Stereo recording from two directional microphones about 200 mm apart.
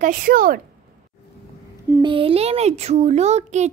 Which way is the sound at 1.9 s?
25° right (ahead or behind).